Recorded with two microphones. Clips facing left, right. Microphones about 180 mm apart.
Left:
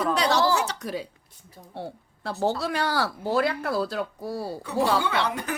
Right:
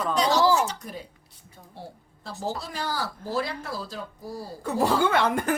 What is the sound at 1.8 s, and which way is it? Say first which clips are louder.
Speech: left 7 dB; 65° left (ahead or behind).